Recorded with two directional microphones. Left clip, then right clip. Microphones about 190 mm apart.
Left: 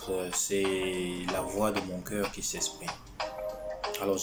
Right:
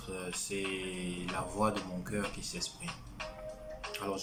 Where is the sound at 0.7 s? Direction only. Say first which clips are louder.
Left 8 dB; 5° right (ahead or behind).